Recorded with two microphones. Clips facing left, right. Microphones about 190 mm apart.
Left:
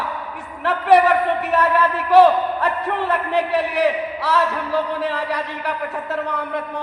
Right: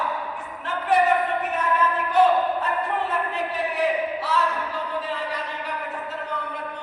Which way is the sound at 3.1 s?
75° left (ahead or behind).